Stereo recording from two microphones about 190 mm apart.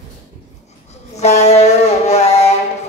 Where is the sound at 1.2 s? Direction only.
35° left (ahead or behind).